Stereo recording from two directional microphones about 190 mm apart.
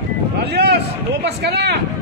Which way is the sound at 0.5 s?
60° right (ahead or behind).